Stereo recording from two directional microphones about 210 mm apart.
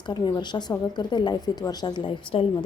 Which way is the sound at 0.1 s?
20° left (ahead or behind).